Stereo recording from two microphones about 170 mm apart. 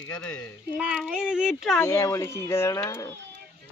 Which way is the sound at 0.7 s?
5° right (ahead or behind).